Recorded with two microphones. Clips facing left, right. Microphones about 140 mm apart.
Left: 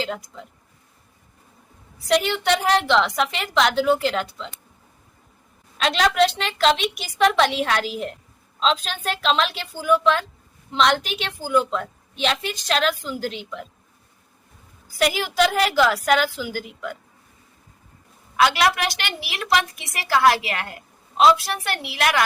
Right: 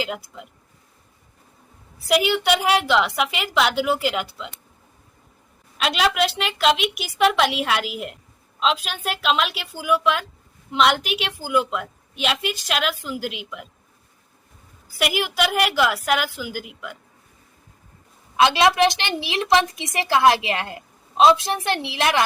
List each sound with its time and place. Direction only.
2.0 s a woman's voice: 5° right (ahead or behind)
5.7 s a woman's voice: 5° right (ahead or behind)
14.9 s a woman's voice: 5° right (ahead or behind)
18.3 s a woman's voice: 25° right (ahead or behind)